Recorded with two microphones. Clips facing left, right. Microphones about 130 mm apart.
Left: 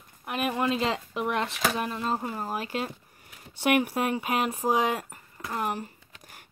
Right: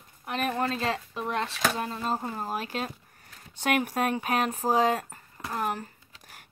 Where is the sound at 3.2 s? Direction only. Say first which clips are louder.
Left 3 dB; 15° left (ahead or behind).